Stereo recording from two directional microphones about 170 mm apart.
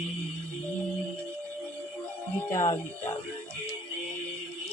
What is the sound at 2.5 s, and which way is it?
Speech, 20° left (ahead or behind).